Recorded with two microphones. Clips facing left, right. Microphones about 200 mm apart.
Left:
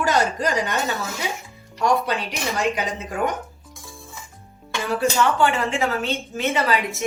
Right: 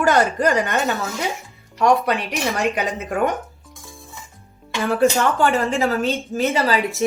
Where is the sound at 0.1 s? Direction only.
50° right (ahead or behind).